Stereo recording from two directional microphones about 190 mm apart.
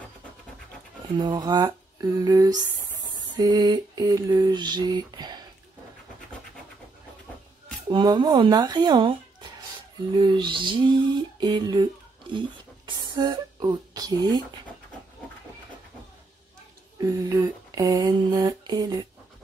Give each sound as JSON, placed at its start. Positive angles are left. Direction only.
{"t": 1.1, "sound": "lullaby", "side_deg": -20}
{"t": 7.9, "sound": "lullaby", "side_deg": -20}
{"t": 11.3, "sound": "speech", "side_deg": -20}
{"t": 17.0, "sound": "lullaby", "side_deg": -20}